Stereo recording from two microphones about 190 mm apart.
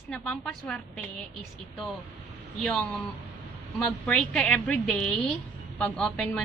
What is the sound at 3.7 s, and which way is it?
A woman's voice, 5° left (ahead or behind).